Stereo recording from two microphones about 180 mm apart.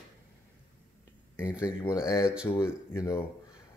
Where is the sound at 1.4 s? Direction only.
5° right (ahead or behind).